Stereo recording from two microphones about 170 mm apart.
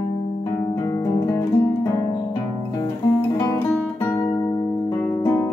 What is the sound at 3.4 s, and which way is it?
Guitar, 15° left (ahead or behind).